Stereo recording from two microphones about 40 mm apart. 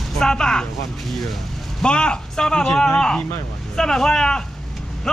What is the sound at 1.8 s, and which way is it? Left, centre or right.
Speech, left.